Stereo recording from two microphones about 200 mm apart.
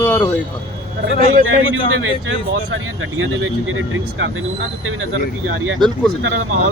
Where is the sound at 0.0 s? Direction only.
10° left (ahead or behind).